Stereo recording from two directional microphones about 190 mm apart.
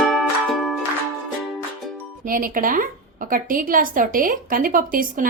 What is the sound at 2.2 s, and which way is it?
A woman's voice, 45° right (ahead or behind).